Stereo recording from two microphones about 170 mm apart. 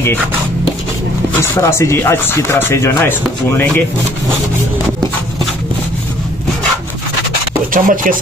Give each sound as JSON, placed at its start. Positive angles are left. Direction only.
{"t": 1.4, "sound": "speech", "side_deg": 15}
{"t": 7.7, "sound": "speech", "side_deg": -50}